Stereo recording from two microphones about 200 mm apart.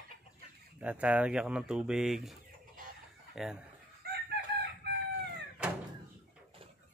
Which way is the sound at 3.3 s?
5° right (ahead or behind).